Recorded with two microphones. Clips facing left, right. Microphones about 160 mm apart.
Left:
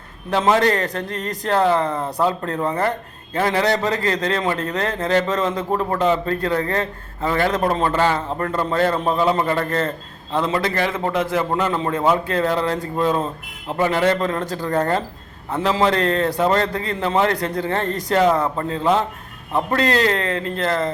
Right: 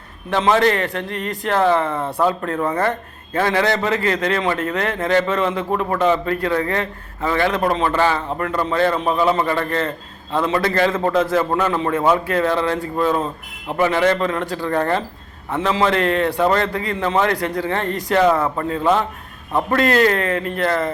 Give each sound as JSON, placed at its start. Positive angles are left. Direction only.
{"t": 0.3, "sound": "a man's voice", "side_deg": 35}
{"t": 10.3, "sound": "a man's voice", "side_deg": 20}
{"t": 11.8, "sound": "a man's voice", "side_deg": 35}